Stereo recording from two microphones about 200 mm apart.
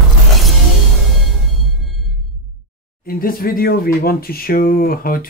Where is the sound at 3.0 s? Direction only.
45° left (ahead or behind).